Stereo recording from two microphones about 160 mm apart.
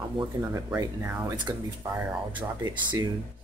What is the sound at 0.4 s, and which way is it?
Speech, 15° right (ahead or behind).